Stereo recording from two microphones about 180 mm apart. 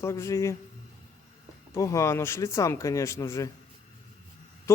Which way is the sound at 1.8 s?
15° left (ahead or behind).